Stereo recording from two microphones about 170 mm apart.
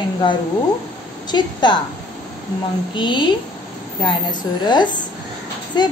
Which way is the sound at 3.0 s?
30° left (ahead or behind).